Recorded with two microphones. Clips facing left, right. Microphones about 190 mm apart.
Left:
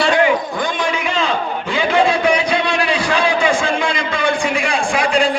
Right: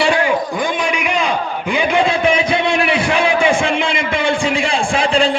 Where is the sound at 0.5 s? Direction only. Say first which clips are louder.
Right 1 dB; 15° right (ahead or behind).